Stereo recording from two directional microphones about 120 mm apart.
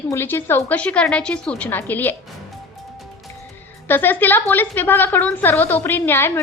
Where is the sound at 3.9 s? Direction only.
15° left (ahead or behind).